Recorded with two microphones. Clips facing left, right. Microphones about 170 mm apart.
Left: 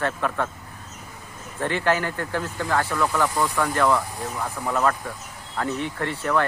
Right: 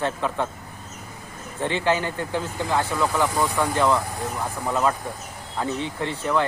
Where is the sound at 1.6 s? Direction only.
20° right (ahead or behind).